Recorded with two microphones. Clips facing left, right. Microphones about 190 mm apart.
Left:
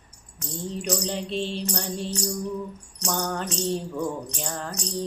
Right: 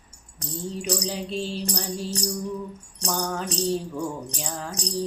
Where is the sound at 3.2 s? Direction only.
Centre (ahead or behind).